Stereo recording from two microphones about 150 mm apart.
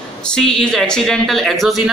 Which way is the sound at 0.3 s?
5° left (ahead or behind).